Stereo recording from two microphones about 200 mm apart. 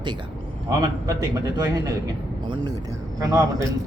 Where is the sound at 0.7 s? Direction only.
15° right (ahead or behind).